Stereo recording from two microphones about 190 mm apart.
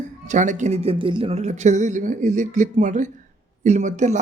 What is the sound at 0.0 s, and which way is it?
Speech, 40° right (ahead or behind).